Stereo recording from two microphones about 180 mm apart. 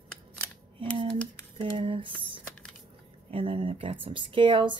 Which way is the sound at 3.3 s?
30° right (ahead or behind).